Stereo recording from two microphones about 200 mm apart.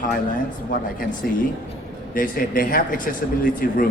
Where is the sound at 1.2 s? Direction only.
50° left (ahead or behind).